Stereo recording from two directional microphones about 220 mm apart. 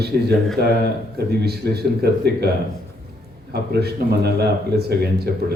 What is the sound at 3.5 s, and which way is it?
Speech, 45° right (ahead or behind).